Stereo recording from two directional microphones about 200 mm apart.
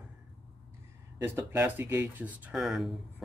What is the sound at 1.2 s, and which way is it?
Speech, 10° right (ahead or behind).